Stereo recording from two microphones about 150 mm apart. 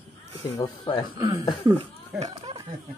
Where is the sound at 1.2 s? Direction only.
25° right (ahead or behind).